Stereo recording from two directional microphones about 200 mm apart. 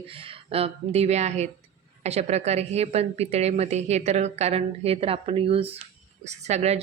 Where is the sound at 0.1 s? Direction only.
25° right (ahead or behind).